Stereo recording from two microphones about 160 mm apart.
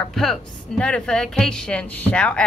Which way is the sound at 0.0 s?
Centre (ahead or behind).